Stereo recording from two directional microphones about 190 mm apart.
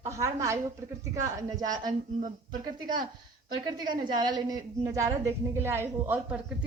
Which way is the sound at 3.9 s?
25° right (ahead or behind).